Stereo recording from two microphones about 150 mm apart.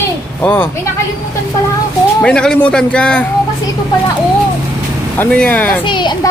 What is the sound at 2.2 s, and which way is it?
Speech, 5° left (ahead or behind).